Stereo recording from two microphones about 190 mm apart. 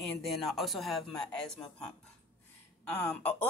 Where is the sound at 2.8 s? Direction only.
10° left (ahead or behind).